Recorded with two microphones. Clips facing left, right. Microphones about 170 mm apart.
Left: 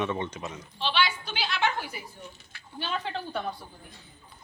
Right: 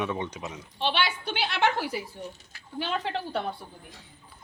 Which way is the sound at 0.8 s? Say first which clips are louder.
Even; 55° right (ahead or behind).